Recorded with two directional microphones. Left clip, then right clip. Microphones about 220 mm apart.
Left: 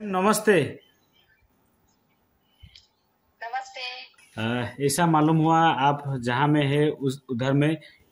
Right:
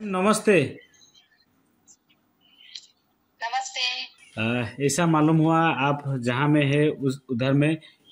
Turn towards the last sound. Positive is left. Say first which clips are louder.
# right 1 dB
turn(degrees=5)  # may be behind; listen again after turning